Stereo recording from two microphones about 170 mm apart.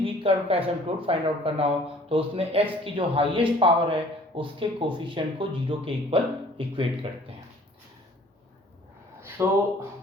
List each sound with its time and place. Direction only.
0.0 s speech: 35° right (ahead or behind)
9.4 s speech: 15° right (ahead or behind)